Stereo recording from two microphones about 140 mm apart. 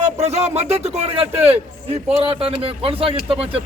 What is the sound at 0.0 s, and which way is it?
A man's voice, 50° right (ahead or behind).